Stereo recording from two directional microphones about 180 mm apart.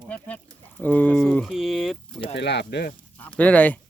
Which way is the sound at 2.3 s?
70° left (ahead or behind).